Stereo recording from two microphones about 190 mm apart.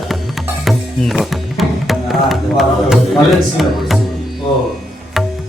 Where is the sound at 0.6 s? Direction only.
Centre (ahead or behind).